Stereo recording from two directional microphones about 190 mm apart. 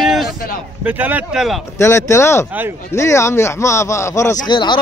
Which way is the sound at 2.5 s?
10° right (ahead or behind).